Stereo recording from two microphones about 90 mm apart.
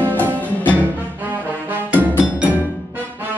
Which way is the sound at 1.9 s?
20° right (ahead or behind).